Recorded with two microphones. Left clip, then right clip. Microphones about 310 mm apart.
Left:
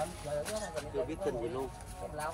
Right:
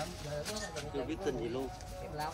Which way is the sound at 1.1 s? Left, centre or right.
Centre.